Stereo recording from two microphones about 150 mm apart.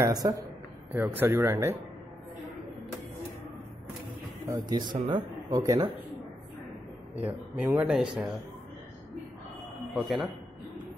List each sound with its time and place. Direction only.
0.0 s speech: 20° right (ahead or behind)
4.5 s speech: 25° right (ahead or behind)
7.2 s speech: 10° right (ahead or behind)
9.9 s a man's voice: centre (ahead or behind)